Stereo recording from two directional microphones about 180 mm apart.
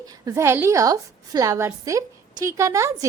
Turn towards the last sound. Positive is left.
turn(degrees=-15)  # may be behind; listen again after turning